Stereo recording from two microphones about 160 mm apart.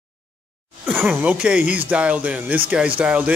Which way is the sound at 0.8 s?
10° right (ahead or behind).